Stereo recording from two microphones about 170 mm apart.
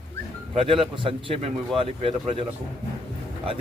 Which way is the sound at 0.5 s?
35° right (ahead or behind).